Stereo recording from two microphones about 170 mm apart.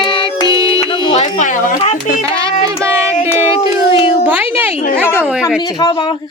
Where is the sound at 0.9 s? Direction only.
35° left (ahead or behind).